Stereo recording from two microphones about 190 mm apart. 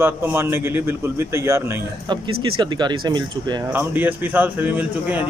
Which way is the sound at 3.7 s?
10° right (ahead or behind).